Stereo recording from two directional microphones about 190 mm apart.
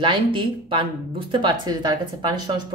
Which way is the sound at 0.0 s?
25° right (ahead or behind).